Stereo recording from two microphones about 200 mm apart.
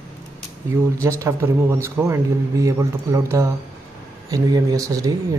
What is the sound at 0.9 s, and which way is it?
A man's voice, 15° right (ahead or behind).